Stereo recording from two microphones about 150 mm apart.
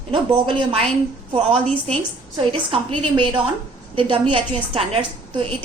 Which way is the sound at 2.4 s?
35° right (ahead or behind).